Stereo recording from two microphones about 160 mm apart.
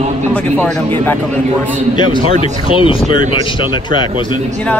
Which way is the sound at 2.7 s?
35° left (ahead or behind).